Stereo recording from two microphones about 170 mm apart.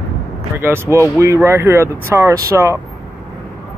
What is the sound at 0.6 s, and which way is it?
Speech, 15° right (ahead or behind).